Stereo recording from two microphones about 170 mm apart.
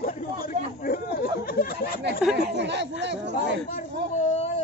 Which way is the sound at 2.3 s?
90° right.